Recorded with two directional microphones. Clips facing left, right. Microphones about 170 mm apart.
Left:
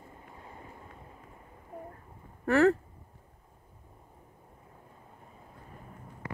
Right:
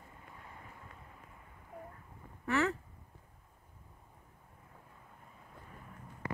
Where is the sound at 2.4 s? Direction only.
40° left (ahead or behind).